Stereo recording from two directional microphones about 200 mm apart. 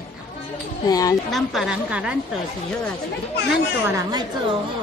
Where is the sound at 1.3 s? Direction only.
Centre (ahead or behind).